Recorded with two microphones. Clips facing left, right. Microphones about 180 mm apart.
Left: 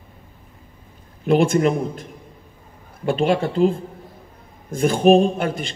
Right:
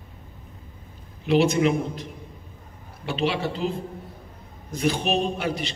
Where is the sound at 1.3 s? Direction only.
50° left (ahead or behind).